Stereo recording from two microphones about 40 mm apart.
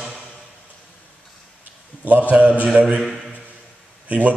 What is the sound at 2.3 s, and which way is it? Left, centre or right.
Speech, right.